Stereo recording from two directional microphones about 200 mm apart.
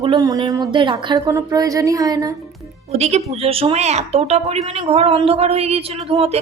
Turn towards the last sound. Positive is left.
turn(degrees=-30)  # may be behind; listen again after turning